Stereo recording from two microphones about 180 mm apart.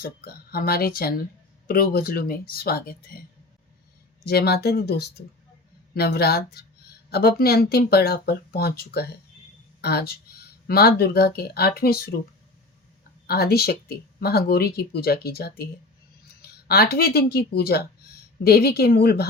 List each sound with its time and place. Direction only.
0.0 s speech: 55° left (ahead or behind)
4.2 s speech: 60° left (ahead or behind)
13.2 s speech: 60° left (ahead or behind)